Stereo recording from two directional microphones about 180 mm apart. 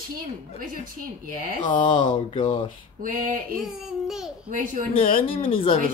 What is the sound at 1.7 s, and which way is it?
Speech, 25° left (ahead or behind).